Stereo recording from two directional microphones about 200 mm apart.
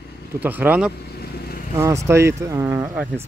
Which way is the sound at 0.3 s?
10° right (ahead or behind).